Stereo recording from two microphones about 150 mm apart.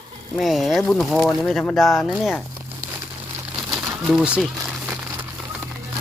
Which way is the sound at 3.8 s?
5° right (ahead or behind).